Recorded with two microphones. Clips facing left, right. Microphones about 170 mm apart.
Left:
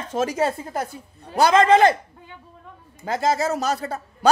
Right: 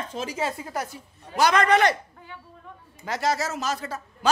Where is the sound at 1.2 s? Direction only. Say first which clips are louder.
Left 4 dB; 35° left (ahead or behind).